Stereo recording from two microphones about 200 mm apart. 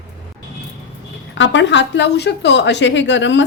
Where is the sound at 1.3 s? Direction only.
65° left (ahead or behind).